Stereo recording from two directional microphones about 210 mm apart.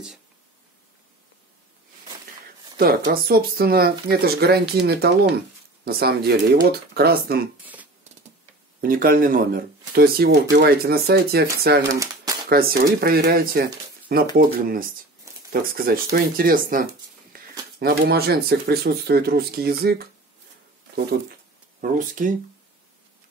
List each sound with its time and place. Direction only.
2.8 s speech: 45° right (ahead or behind)
7.6 s speech: 5° right (ahead or behind)
8.8 s speech: 45° right (ahead or behind)
11.9 s typewriter: 15° right (ahead or behind)
12.4 s speech: 45° right (ahead or behind)
21.8 s speech: 40° right (ahead or behind)